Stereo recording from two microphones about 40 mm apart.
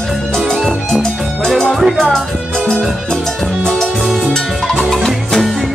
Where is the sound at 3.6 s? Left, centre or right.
Centre.